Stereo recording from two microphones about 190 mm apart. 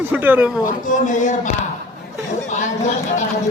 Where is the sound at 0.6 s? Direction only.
45° left (ahead or behind).